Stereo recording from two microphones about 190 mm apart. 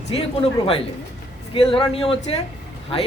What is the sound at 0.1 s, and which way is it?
A man's voice, 30° left (ahead or behind).